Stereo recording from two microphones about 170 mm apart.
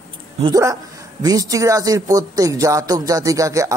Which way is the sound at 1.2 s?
20° right (ahead or behind).